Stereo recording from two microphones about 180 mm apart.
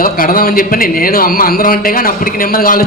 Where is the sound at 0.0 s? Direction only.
50° left (ahead or behind).